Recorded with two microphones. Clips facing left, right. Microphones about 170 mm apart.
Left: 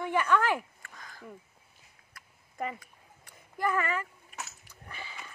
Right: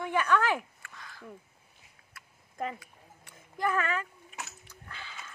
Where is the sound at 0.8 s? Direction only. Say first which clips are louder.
Even; 40° left (ahead or behind).